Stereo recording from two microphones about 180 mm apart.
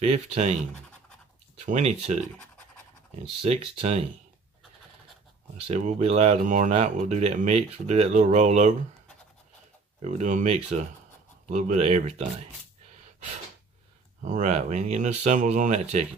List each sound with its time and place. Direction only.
0.0 s speech: 35° right (ahead or behind)
1.6 s speech: 40° right (ahead or behind)
3.2 s speech: 35° right (ahead or behind)
5.7 s speech: 40° right (ahead or behind)
10.0 s speech: 40° right (ahead or behind)
14.2 s speech: 45° right (ahead or behind)